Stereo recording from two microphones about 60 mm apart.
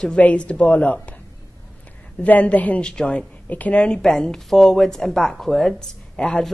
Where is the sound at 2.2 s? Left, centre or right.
Left.